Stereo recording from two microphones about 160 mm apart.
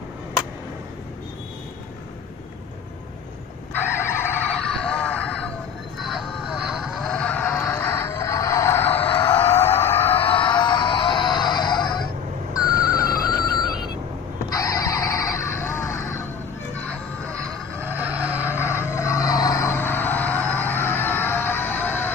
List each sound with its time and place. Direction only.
3.7 s vehicle: 15° left (ahead or behind)
4.6 s a sound: 5° left (ahead or behind)
5.9 s vehicle: centre (ahead or behind)
6.8 s music: centre (ahead or behind)
9.6 s a sound: 15° left (ahead or behind)
10.1 s music: 35° left (ahead or behind)
14.5 s vehicle: 20° left (ahead or behind)
16.9 s music: 5° left (ahead or behind)
17.8 s vehicle: 10° right (ahead or behind)
18.5 s a sound: 15° left (ahead or behind)